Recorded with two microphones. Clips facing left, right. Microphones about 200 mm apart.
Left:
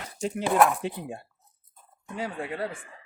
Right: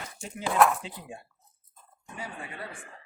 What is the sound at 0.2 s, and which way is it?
Speech, 70° left (ahead or behind).